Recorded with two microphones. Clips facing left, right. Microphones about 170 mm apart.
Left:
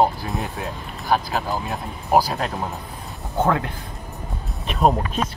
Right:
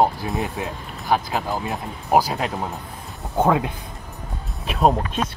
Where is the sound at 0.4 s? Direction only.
20° right (ahead or behind).